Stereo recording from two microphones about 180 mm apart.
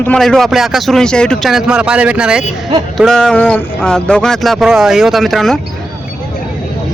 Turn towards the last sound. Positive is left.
turn(degrees=0)  # may be behind; listen again after turning